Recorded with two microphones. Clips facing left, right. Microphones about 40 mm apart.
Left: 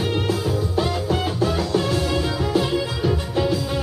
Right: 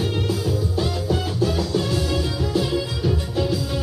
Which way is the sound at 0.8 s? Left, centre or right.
Left.